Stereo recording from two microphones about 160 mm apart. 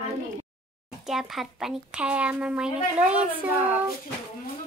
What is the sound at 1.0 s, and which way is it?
Speech, centre (ahead or behind).